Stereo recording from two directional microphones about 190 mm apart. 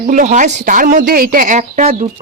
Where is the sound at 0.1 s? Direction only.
45° right (ahead or behind).